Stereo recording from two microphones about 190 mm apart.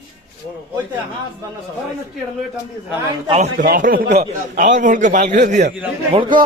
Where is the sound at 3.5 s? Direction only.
50° right (ahead or behind).